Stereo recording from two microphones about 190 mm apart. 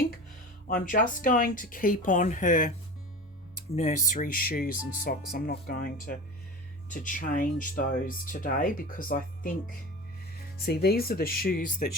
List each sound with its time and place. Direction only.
0.7 s speech: 45° left (ahead or behind)
10.6 s speech: 55° left (ahead or behind)